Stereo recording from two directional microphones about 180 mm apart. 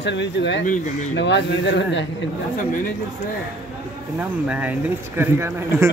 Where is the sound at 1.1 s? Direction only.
80° left.